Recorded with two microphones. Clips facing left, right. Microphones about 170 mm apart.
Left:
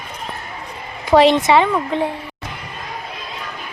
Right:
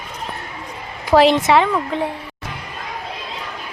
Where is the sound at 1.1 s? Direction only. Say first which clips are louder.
Left 1 dB; centre (ahead or behind).